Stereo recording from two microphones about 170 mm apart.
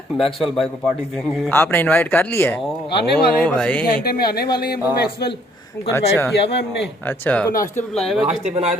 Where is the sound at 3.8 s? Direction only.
60° left (ahead or behind).